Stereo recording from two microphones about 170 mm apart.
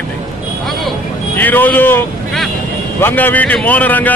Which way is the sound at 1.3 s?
10° left (ahead or behind).